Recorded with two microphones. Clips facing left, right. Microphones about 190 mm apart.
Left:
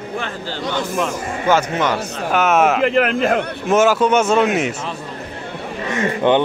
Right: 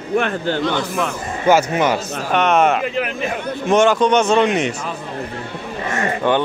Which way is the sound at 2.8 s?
70° left (ahead or behind).